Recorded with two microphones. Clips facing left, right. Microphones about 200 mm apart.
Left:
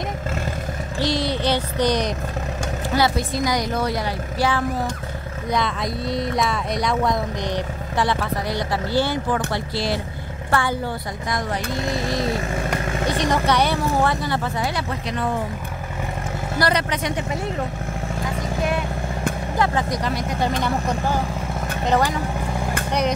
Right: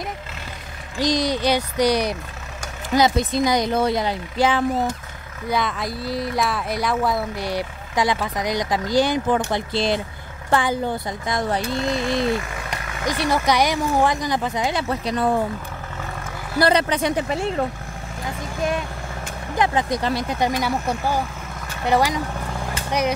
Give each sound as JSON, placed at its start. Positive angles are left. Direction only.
{"t": 0.9, "sound": "speech", "side_deg": -15}
{"t": 3.0, "sound": "speech", "side_deg": -20}
{"t": 5.5, "sound": "speech", "side_deg": 0}
{"t": 12.8, "sound": "vehicle", "side_deg": 30}
{"t": 13.2, "sound": "speech", "side_deg": -10}
{"t": 16.5, "sound": "speech", "side_deg": -30}
{"t": 19.6, "sound": "speech", "side_deg": -20}
{"t": 20.3, "sound": "speech", "side_deg": -10}